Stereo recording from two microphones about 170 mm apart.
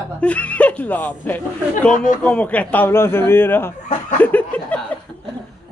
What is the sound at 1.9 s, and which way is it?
Speech, 50° left (ahead or behind).